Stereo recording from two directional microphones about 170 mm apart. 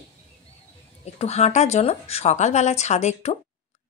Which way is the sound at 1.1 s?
40° left (ahead or behind).